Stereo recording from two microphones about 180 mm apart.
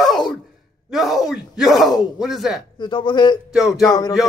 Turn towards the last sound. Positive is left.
turn(degrees=20)  # may be behind; listen again after turning